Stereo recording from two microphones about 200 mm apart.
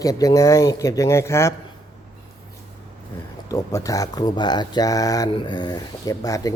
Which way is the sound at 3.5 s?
15° left (ahead or behind).